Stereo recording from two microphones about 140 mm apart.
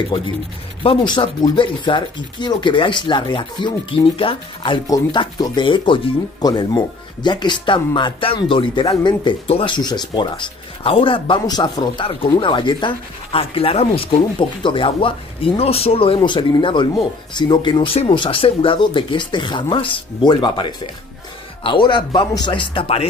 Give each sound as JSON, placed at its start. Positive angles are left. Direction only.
{"t": 0.8, "sound": "speech", "side_deg": 35}
{"t": 4.8, "sound": "speech", "side_deg": 25}